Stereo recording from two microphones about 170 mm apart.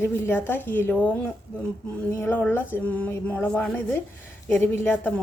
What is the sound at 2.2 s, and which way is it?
A woman's voice, 10° left (ahead or behind).